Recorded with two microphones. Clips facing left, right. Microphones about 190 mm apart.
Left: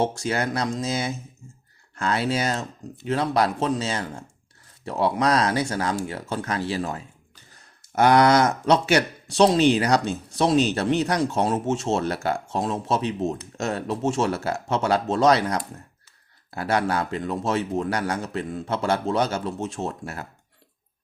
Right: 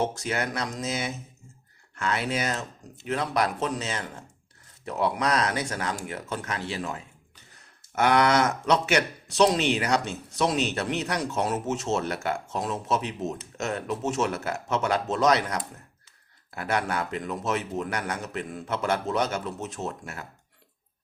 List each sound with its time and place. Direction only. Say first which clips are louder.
0.0 s speech: left 4 dB; 30° left (ahead or behind)